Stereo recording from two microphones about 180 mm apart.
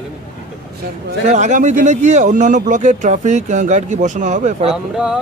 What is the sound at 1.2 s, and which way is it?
Speech, 40° right (ahead or behind).